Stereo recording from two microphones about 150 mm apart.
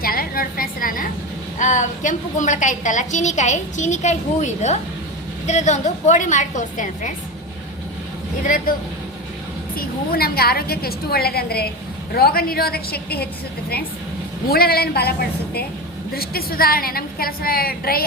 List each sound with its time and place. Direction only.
0.0 s a sound: 75° left (ahead or behind)
1.5 s a woman's voice: 55° left (ahead or behind)
8.4 s a woman's voice: 65° left (ahead or behind)
9.7 s a woman's voice: 85° left
14.5 s a woman's voice: 90° left
16.1 s a woman's voice: 90° left